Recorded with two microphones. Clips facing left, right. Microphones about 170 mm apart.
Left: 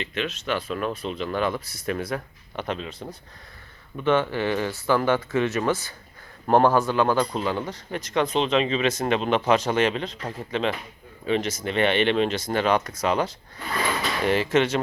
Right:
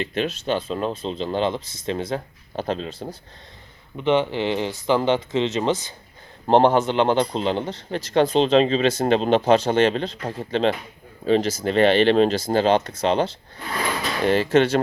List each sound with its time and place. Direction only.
0.0 s speech: 35° right (ahead or behind)
3.9 s a man's voice: 20° right (ahead or behind)